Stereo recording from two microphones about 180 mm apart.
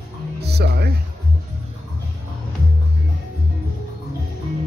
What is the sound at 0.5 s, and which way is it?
Music, 65° right (ahead or behind).